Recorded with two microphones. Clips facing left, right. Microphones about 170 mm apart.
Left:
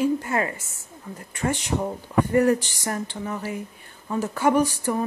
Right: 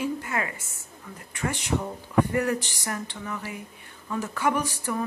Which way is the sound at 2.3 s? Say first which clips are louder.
Left 7 dB; 35° left (ahead or behind).